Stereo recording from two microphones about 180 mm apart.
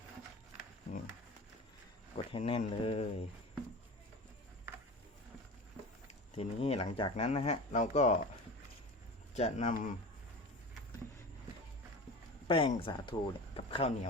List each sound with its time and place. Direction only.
2.1 s speech: 30° left (ahead or behind)
6.1 s speech: 35° left (ahead or behind)
9.3 s speech: 40° left (ahead or behind)
12.5 s speech: 30° left (ahead or behind)